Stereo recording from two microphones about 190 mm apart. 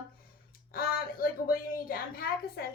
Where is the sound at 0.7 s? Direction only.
50° left (ahead or behind).